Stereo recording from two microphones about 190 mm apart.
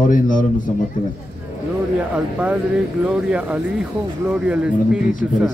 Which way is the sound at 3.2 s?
5° right (ahead or behind).